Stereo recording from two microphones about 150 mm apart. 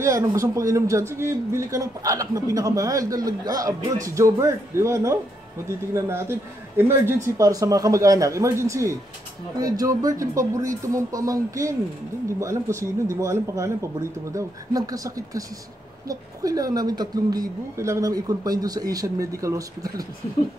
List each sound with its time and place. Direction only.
0.0 s speech: 20° right (ahead or behind)